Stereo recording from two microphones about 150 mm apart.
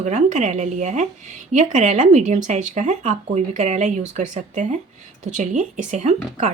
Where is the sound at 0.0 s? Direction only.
50° right (ahead or behind).